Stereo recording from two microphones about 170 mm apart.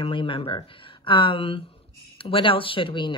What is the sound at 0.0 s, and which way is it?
A woman's voice, 30° left (ahead or behind).